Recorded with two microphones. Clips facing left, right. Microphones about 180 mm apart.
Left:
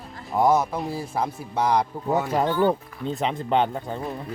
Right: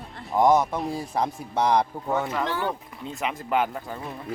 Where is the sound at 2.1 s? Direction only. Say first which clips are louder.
Left 4 dB; 35° left (ahead or behind).